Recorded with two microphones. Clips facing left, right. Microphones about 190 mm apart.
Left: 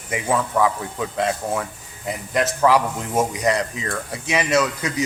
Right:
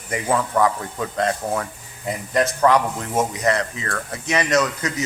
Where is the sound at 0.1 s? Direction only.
5° left (ahead or behind).